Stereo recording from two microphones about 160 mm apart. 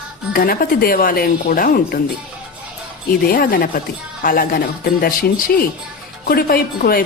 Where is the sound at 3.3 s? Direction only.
70° left (ahead or behind).